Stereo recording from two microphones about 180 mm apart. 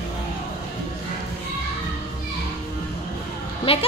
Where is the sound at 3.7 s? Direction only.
30° left (ahead or behind).